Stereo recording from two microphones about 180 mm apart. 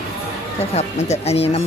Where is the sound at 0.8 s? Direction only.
40° left (ahead or behind).